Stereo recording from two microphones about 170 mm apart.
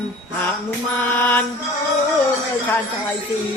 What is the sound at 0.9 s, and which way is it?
Speech, 10° left (ahead or behind).